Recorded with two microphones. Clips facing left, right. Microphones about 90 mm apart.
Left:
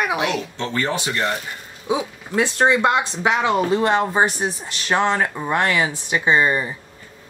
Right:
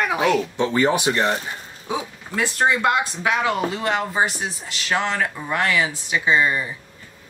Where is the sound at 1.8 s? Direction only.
20° left (ahead or behind).